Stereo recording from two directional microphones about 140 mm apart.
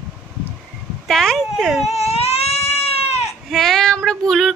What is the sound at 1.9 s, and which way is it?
Baby cry, 50° left (ahead or behind).